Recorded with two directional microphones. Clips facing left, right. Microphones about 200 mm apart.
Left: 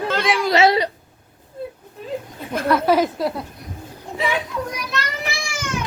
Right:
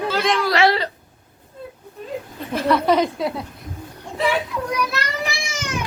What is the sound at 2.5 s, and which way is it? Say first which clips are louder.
Speech: even; centre (ahead or behind).